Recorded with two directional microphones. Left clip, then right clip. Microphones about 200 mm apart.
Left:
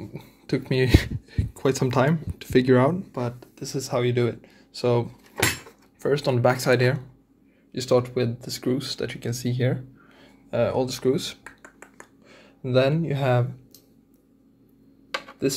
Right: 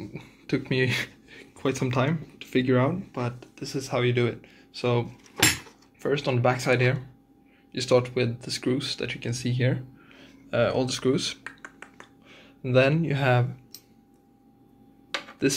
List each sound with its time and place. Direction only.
0.0 s a sound: 15° left (ahead or behind); by 3.0 s 35° left (ahead or behind)
3.1 s speech: 20° left (ahead or behind)
7.7 s speech: 15° left (ahead or behind)
12.0 s a sound: 20° left (ahead or behind)
12.6 s speech: 10° left (ahead or behind)
15.4 s speech: 5° left (ahead or behind)